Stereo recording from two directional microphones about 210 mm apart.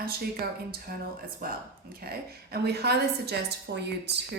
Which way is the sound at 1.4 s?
45° right (ahead or behind).